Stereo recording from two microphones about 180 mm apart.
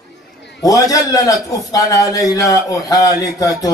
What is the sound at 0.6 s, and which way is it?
A man's voice, 20° left (ahead or behind).